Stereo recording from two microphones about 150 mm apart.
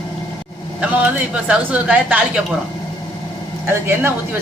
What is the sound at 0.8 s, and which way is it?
Speech, 10° right (ahead or behind).